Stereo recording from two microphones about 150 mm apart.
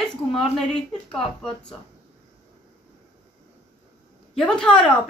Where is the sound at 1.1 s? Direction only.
5° left (ahead or behind).